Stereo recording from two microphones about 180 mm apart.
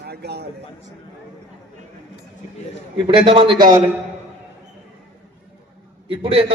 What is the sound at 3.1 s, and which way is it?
Speech, 30° right (ahead or behind).